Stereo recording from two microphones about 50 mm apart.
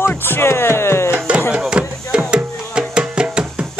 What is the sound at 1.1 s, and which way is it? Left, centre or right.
Music, right.